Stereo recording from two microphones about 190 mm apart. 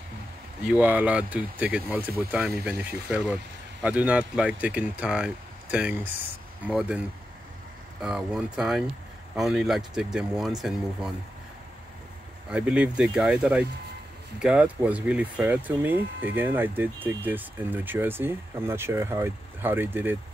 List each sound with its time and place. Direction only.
0.7 s speech: 10° right (ahead or behind)
8.0 s speech: 5° right (ahead or behind)
12.4 s speech: 5° right (ahead or behind)